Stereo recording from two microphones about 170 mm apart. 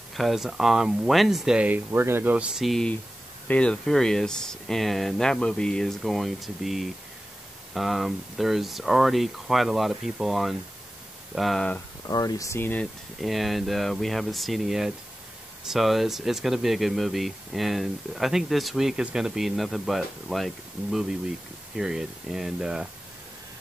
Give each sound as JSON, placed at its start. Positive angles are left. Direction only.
{"t": 0.1, "sound": "speech", "side_deg": 0}
{"t": 12.1, "sound": "speech", "side_deg": 20}
{"t": 13.2, "sound": "speech", "side_deg": 0}